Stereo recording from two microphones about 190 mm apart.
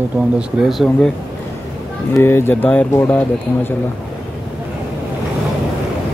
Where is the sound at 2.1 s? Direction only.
10° left (ahead or behind).